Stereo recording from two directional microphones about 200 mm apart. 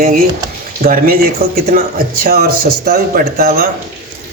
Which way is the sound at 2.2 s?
50° right (ahead or behind).